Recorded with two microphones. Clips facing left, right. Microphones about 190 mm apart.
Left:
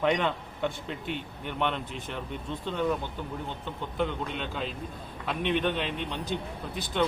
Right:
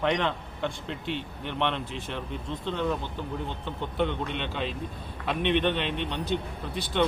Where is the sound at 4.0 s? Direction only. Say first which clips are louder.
Right 2 dB; centre (ahead or behind).